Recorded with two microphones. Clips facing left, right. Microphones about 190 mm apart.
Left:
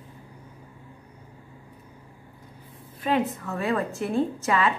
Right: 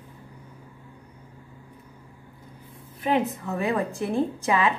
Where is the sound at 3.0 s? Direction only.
20° right (ahead or behind).